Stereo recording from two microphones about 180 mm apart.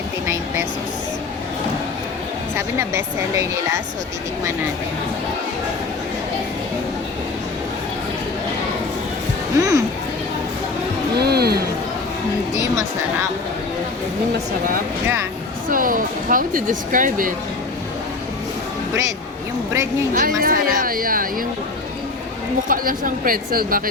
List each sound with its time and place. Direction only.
2.6 s speech: 15° right (ahead or behind)
9.6 s speech: 20° right (ahead or behind)
11.2 s music: 60° right (ahead or behind)
15.7 s speech: 50° right (ahead or behind)
19.7 s speech: 15° right (ahead or behind)
20.1 s speech: 50° right (ahead or behind)
22.7 s speech: 50° right (ahead or behind)